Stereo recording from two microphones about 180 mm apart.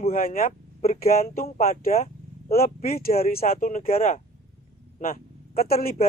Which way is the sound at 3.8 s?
35° left (ahead or behind).